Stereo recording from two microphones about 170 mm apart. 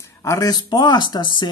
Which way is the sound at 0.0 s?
15° left (ahead or behind).